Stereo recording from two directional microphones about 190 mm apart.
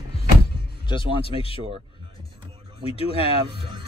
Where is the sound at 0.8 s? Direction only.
30° left (ahead or behind).